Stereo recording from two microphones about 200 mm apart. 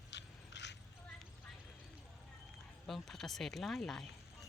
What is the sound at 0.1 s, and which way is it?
Biting, 60° left (ahead or behind).